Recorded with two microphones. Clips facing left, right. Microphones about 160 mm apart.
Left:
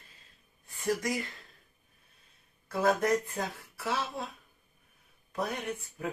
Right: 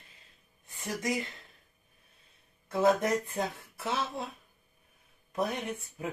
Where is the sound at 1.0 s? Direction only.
20° right (ahead or behind).